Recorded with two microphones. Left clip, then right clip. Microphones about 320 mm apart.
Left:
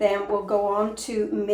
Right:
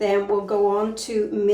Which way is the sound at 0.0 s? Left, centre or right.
Centre.